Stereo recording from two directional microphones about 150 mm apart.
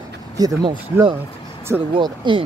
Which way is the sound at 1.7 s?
20° right (ahead or behind).